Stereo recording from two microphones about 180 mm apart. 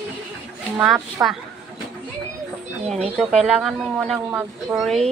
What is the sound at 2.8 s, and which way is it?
Speech, 35° right (ahead or behind).